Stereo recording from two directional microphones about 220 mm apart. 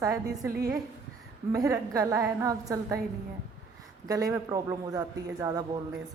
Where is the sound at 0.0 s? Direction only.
15° right (ahead or behind).